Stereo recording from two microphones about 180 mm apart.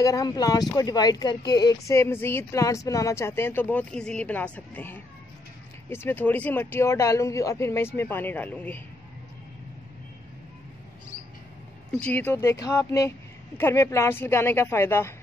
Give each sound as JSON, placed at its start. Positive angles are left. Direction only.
{"t": 0.0, "sound": "speech", "side_deg": 20}
{"t": 12.0, "sound": "speech", "side_deg": 10}